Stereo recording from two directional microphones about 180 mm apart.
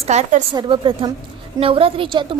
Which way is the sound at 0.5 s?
25° right (ahead or behind).